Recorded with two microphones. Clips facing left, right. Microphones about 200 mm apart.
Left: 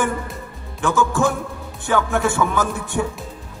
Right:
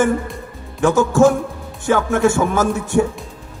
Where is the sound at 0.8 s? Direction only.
45° right (ahead or behind).